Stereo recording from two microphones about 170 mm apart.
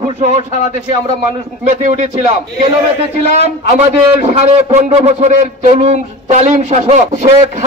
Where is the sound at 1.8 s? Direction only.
45° right (ahead or behind).